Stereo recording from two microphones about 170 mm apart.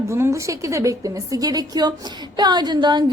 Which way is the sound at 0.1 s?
15° right (ahead or behind).